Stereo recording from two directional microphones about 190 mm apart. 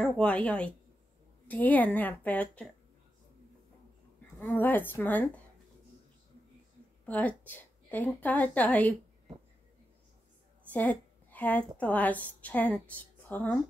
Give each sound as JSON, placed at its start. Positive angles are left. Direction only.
{"t": 0.0, "sound": "a woman's voice", "side_deg": 5}
{"t": 4.4, "sound": "a woman's voice", "side_deg": 10}
{"t": 7.1, "sound": "a woman's voice", "side_deg": 10}
{"t": 10.7, "sound": "a woman's voice", "side_deg": 10}